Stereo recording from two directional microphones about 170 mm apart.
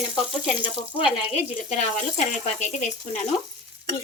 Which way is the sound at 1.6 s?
45° left (ahead or behind).